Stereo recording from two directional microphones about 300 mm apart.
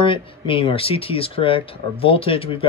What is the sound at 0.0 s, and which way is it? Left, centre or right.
Speech, centre.